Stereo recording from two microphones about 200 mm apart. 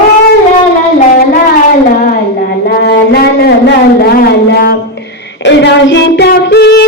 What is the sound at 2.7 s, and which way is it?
Music, 55° left (ahead or behind).